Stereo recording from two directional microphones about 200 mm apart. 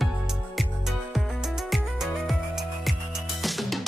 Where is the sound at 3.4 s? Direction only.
Centre (ahead or behind).